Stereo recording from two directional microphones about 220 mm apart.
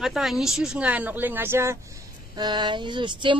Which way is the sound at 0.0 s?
Centre (ahead or behind).